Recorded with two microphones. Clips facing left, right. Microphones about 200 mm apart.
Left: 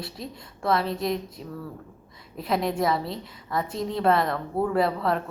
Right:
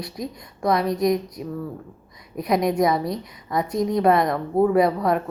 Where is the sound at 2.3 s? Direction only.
15° right (ahead or behind).